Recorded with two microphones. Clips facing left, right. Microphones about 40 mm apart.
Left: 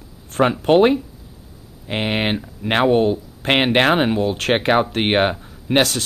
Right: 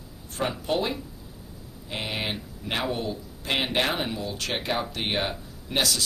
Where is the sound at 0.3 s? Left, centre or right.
Left.